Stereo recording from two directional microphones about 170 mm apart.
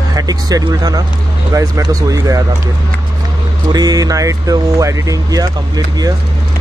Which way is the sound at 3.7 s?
20° right (ahead or behind).